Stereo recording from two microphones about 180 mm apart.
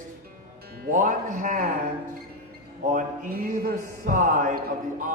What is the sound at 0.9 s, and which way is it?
Speech, 45° right (ahead or behind).